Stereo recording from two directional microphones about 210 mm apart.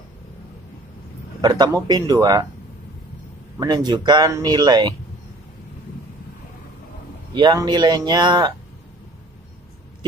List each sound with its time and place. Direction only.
1.4 s speech: 20° right (ahead or behind)
3.5 s speech: 20° right (ahead or behind)
7.3 s speech: 20° right (ahead or behind)